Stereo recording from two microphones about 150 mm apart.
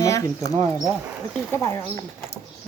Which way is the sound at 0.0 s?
20° left (ahead or behind).